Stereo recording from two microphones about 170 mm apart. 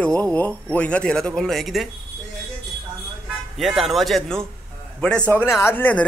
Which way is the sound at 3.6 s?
Centre (ahead or behind).